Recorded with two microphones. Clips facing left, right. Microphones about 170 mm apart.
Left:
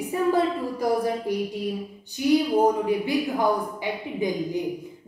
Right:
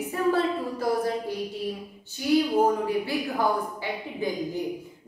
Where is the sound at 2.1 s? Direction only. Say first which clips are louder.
Left 2 dB; 15° left (ahead or behind).